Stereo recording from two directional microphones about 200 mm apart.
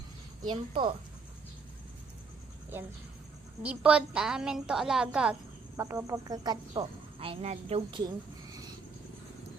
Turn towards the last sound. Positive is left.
turn(degrees=-30)  # may be behind; listen again after turning